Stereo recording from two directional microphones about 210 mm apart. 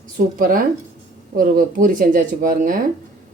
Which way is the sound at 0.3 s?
40° right (ahead or behind).